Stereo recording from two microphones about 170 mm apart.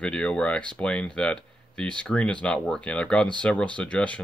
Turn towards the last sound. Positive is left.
turn(degrees=5)  # may be behind; listen again after turning